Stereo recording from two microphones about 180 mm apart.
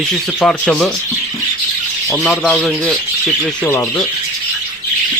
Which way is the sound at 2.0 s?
Centre (ahead or behind).